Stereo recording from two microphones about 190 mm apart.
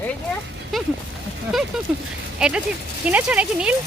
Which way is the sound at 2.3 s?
5° right (ahead or behind).